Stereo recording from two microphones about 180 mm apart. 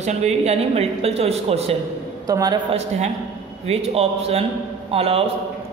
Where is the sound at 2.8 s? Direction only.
40° right (ahead or behind).